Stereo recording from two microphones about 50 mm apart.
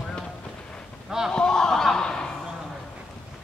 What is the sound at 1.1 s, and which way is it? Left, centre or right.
Speech, centre.